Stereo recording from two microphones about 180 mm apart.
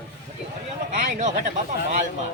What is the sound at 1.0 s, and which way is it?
Speech, 40° right (ahead or behind).